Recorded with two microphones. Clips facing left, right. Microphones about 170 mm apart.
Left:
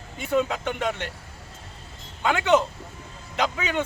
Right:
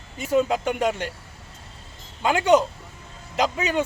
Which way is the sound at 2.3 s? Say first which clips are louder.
Right 2 dB; 40° right (ahead or behind).